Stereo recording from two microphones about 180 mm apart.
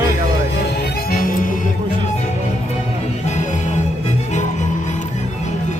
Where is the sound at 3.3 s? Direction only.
40° left (ahead or behind).